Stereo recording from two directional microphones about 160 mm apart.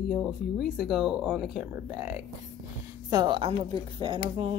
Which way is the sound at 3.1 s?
25° right (ahead or behind).